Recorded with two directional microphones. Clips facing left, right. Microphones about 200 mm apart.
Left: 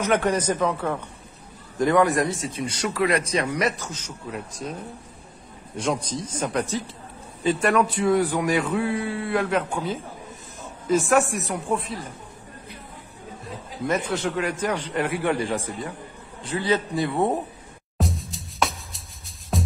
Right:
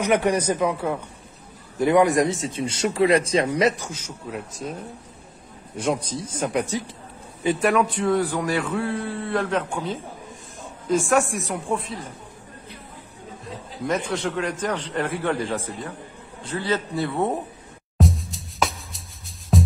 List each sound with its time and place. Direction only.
0.0 s a man's voice: 15° right (ahead or behind)
3.8 s a man's voice: 10° right (ahead or behind)
5.8 s a man's voice: 10° right (ahead or behind)
7.6 s a man's voice: centre (ahead or behind)
13.8 s a man's voice: 5° left (ahead or behind)
17.9 s music: centre (ahead or behind)